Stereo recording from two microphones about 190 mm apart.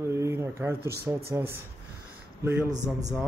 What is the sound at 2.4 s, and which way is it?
Speech, 10° right (ahead or behind).